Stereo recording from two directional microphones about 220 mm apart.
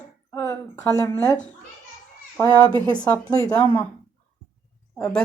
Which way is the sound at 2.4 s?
15° left (ahead or behind).